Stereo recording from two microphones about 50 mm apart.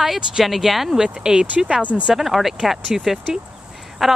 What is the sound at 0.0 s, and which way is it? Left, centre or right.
Speech, centre.